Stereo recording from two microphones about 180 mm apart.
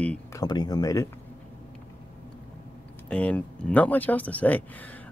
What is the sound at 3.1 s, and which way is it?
Speech, 10° left (ahead or behind).